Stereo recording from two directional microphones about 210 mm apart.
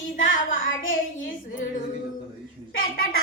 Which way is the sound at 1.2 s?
40° left (ahead or behind).